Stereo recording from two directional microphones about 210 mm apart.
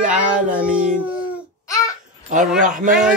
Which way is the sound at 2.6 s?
40° right (ahead or behind).